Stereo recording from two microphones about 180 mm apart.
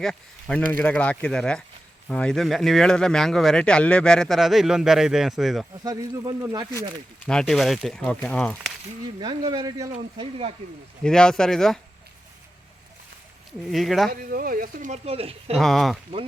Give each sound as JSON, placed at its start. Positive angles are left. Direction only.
{"t": 0.0, "sound": "speech", "side_deg": 5}
{"t": 5.7, "sound": "speech", "side_deg": -20}
{"t": 7.3, "sound": "speech", "side_deg": 5}
{"t": 9.2, "sound": "speech", "side_deg": -20}
{"t": 9.9, "sound": "speech", "side_deg": -35}
{"t": 11.0, "sound": "speech", "side_deg": 5}
{"t": 13.7, "sound": "speech", "side_deg": 0}
{"t": 14.1, "sound": "speech", "side_deg": -55}
{"t": 15.5, "sound": "speech", "side_deg": 0}